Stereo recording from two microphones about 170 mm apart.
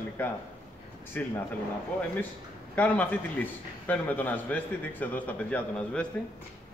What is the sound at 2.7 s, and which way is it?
A man's voice, 10° left (ahead or behind).